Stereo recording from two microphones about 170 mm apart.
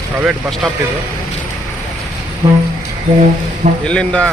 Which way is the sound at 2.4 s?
35° right (ahead or behind).